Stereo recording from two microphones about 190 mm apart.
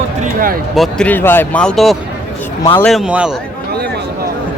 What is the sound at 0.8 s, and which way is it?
Speech, 5° left (ahead or behind).